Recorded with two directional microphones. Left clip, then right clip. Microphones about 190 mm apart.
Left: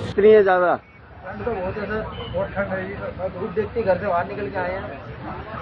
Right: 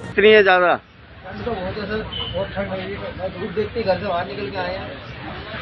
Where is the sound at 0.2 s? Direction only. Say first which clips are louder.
Right 2 dB; 25° right (ahead or behind).